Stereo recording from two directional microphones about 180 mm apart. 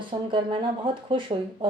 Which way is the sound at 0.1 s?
30° right (ahead or behind).